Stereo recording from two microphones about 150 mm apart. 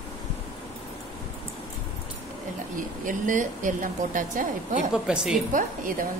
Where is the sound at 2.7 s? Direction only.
60° right (ahead or behind).